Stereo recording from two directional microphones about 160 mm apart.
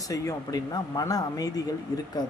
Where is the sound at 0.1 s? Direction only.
20° left (ahead or behind).